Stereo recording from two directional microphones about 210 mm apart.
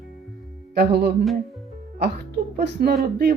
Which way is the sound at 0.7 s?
50° right (ahead or behind).